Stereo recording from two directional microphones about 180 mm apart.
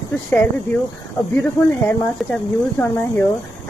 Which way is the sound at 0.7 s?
10° left (ahead or behind).